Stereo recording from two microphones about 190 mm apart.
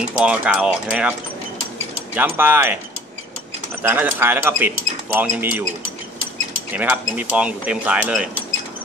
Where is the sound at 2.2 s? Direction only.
10° right (ahead or behind).